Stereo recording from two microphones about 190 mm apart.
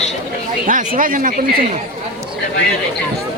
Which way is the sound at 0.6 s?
45° right (ahead or behind).